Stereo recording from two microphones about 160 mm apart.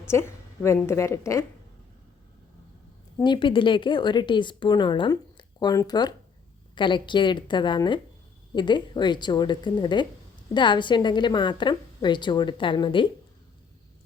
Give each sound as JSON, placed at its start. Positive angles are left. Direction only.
{"t": 0.1, "sound": "a woman's voice", "side_deg": 15}
{"t": 3.2, "sound": "a woman's voice", "side_deg": 25}